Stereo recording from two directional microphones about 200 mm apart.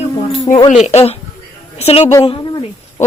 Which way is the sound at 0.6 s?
35° left (ahead or behind).